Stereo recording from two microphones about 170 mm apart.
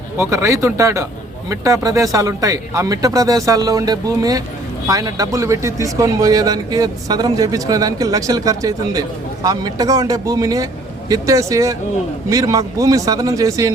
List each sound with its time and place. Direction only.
0.2 s a man's voice: 15° right (ahead or behind)